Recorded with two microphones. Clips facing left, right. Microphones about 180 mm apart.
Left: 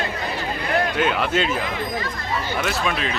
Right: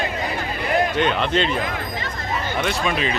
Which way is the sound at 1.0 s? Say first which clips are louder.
Right 1 dB; 5° left (ahead or behind).